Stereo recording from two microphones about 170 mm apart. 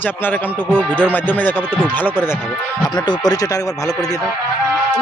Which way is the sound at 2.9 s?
25° left (ahead or behind).